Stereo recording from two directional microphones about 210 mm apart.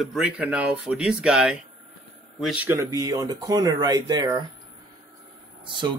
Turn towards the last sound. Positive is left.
turn(degrees=-20)  # may be behind; listen again after turning